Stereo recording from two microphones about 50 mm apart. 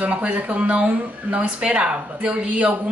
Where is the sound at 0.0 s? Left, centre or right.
Right.